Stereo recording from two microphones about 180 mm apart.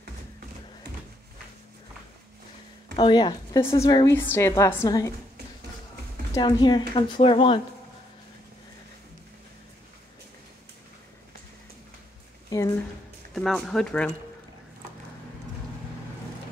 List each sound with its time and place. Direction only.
3.0 s a woman's voice: 25° left (ahead or behind)
6.3 s a woman's voice: 25° left (ahead or behind)
12.4 s a sound: 20° left (ahead or behind)
13.3 s speech: centre (ahead or behind)